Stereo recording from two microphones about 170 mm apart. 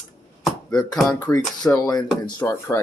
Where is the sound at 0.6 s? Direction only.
25° left (ahead or behind).